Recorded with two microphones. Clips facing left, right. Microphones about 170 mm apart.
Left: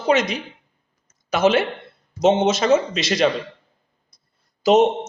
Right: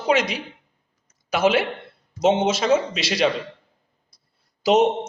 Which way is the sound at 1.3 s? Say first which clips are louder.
Left 2 dB; 10° right (ahead or behind).